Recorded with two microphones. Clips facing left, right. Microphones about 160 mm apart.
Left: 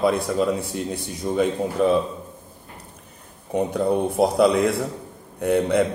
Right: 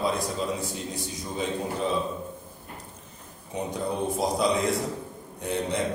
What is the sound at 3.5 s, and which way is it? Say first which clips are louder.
Speech: left 9 dB; 60° left (ahead or behind).